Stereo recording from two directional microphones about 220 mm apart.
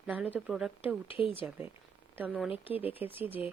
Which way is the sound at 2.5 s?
25° left (ahead or behind).